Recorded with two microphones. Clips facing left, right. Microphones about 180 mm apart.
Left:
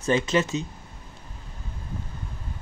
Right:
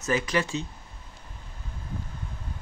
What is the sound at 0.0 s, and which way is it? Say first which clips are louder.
Speech: left 4 dB; 25° left (ahead or behind).